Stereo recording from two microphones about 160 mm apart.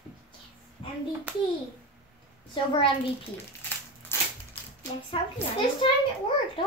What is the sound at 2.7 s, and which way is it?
Speech, 35° left (ahead or behind).